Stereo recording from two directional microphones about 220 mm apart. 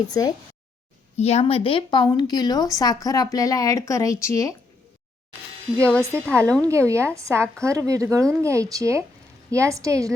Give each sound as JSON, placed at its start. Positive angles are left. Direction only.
{"t": 0.1, "sound": "speech", "side_deg": 15}
{"t": 1.1, "sound": "a woman's voice", "side_deg": 30}
{"t": 6.1, "sound": "a woman's voice", "side_deg": 5}
{"t": 6.7, "sound": "speech", "side_deg": -15}